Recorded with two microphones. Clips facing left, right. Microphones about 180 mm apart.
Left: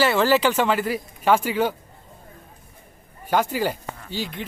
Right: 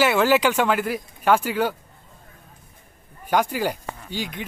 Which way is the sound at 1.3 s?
10° left (ahead or behind).